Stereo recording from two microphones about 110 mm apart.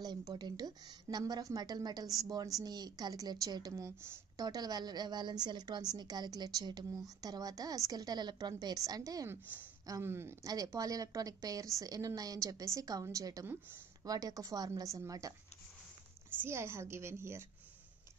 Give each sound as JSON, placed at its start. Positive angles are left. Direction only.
{"t": 0.0, "sound": "a woman's voice", "side_deg": -40}
{"t": 10.4, "sound": "a woman's voice", "side_deg": -35}
{"t": 16.3, "sound": "a woman's voice", "side_deg": -25}